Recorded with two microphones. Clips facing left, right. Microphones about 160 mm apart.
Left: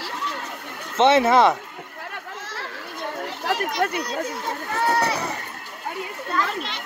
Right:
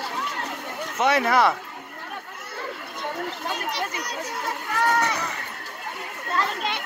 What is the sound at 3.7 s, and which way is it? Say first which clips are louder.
Speech: left 6 dB; 50° left (ahead or behind).